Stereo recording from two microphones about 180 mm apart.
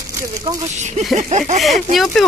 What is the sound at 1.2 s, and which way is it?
Speech, 40° right (ahead or behind).